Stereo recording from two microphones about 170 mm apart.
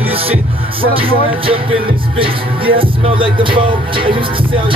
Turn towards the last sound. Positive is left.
turn(degrees=-30)  # may be behind; listen again after turning